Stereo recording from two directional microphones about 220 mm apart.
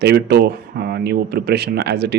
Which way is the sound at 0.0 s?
50° right (ahead or behind).